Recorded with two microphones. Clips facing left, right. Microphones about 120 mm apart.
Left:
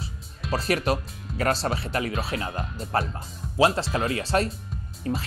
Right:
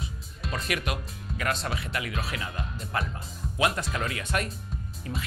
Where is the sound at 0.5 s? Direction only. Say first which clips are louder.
Left 7 dB; 35° left (ahead or behind).